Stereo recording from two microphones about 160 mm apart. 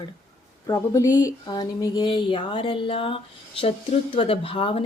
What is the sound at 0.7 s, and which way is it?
Speech, 20° left (ahead or behind).